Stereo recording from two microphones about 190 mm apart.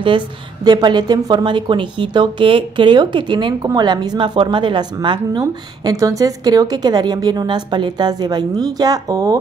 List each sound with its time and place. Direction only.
0.7 s speech: 20° right (ahead or behind)